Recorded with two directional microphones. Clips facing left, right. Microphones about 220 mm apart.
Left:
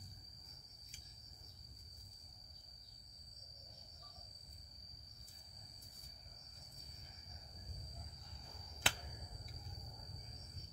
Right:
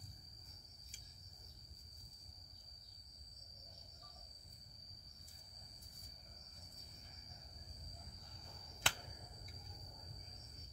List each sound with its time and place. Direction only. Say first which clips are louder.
8.8 s finger snapping: left 2 dB; 5° left (ahead or behind)